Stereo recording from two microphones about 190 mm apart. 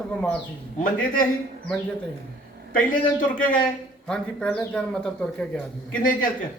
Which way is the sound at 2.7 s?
45° left (ahead or behind).